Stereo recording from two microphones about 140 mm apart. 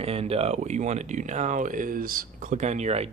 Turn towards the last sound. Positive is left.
turn(degrees=-50)  # may be behind; listen again after turning